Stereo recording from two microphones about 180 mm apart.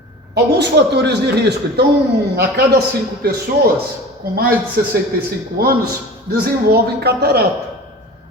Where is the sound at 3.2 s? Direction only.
60° right (ahead or behind).